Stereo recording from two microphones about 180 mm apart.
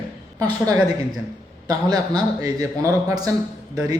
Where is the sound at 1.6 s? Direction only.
20° right (ahead or behind).